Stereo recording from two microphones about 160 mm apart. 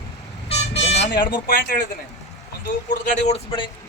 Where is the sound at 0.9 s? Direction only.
80° left.